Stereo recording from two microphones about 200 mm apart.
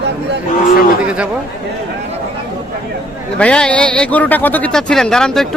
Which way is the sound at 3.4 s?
5° left (ahead or behind).